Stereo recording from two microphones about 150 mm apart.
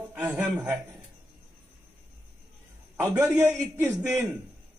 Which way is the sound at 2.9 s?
15° right (ahead or behind).